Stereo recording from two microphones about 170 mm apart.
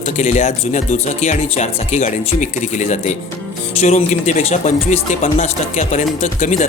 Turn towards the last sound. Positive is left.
turn(degrees=45)  # may be behind; listen again after turning